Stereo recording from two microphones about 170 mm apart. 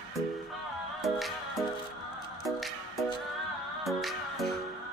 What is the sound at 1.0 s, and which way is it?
Music, centre (ahead or behind).